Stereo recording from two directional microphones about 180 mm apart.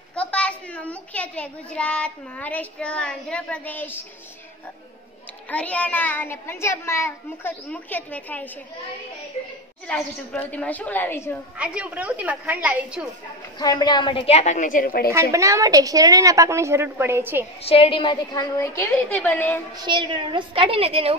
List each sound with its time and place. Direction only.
0.1 s a child's voice: 5° left (ahead or behind)
5.5 s a child's voice: 5° left (ahead or behind)
9.8 s a child's voice: 5° left (ahead or behind)
11.5 s a woman's voice: 5° right (ahead or behind)
13.6 s a woman's voice: 25° left (ahead or behind); by 15.1 s 55° left (ahead or behind)
15.3 s a woman's voice: 15° right (ahead or behind)
17.6 s a woman's voice: 30° left (ahead or behind)
18.8 s a child's voice: 10° left (ahead or behind)
19.8 s a woman's voice: 25° right (ahead or behind)